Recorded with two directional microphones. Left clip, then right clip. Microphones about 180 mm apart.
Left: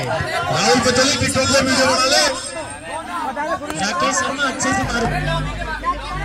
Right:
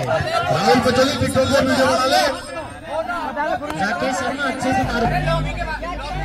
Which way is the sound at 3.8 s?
30° right (ahead or behind).